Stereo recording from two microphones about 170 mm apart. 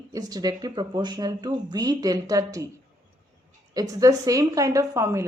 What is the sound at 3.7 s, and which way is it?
Speech, 20° right (ahead or behind).